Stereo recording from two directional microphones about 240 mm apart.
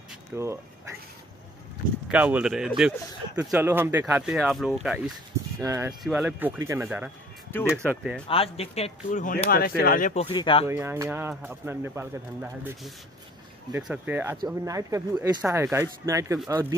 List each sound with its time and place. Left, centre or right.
0.4 s speech: centre
2.0 s speech: centre
7.5 s speech: centre
7.8 s speech: centre
8.3 s speech: left
10.7 s speech: centre